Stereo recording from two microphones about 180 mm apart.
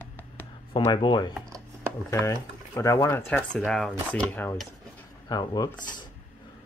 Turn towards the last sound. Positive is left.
turn(degrees=20)  # may be behind; listen again after turning